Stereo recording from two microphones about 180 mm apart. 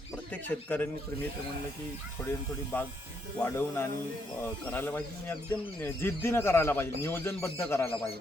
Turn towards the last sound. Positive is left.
turn(degrees=10)  # may be behind; listen again after turning